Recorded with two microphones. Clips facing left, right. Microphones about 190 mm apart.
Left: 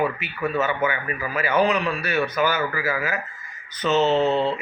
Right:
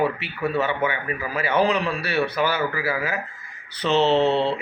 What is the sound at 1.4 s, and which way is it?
Speech, 30° right (ahead or behind).